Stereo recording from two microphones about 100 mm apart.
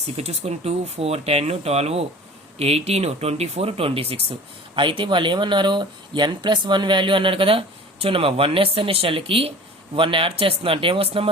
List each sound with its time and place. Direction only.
0.2 s speech: 90° right
4.7 s speech: 55° right (ahead or behind)